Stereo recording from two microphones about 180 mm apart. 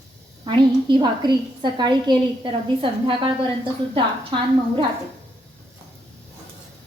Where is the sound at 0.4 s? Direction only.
25° right (ahead or behind).